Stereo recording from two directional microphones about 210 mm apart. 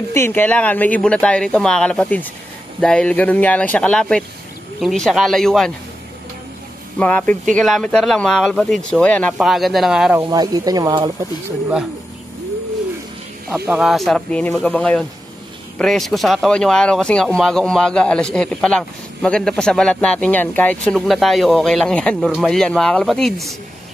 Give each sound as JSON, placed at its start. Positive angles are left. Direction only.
{"t": 0.1, "sound": "speech", "side_deg": 10}
{"t": 7.0, "sound": "speech", "side_deg": 5}
{"t": 10.3, "sound": "speech", "side_deg": -20}
{"t": 13.7, "sound": "speech", "side_deg": -5}